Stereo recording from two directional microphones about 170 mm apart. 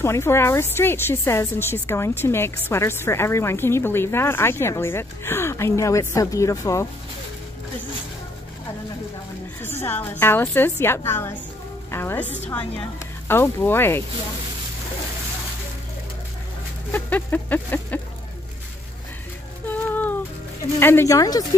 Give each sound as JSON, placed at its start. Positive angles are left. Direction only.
{"t": 0.0, "sound": "a woman's voice", "side_deg": 15}
{"t": 9.6, "sound": "a woman's voice", "side_deg": 15}
{"t": 16.9, "sound": "a woman's voice", "side_deg": 10}
{"t": 19.7, "sound": "a sound", "side_deg": 10}
{"t": 20.8, "sound": "a woman's voice", "side_deg": 15}